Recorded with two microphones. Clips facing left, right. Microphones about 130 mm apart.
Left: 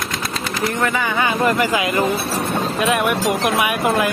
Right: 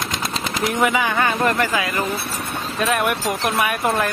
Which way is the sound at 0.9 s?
Centre (ahead or behind).